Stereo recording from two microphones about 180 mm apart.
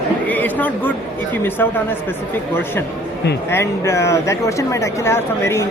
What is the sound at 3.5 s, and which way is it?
Speech, 15° left (ahead or behind).